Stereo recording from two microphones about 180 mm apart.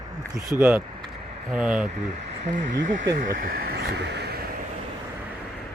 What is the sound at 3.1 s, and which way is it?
Speech, 50° right (ahead or behind).